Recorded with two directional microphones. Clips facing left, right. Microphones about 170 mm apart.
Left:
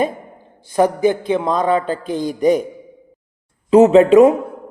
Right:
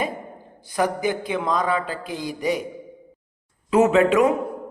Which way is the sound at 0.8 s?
35° left (ahead or behind).